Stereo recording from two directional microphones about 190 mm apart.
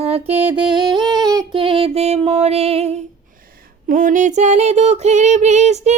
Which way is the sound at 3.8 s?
45° right (ahead or behind).